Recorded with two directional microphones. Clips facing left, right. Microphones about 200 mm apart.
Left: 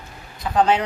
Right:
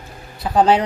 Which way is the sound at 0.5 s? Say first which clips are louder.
Right 3 dB; 35° right (ahead or behind).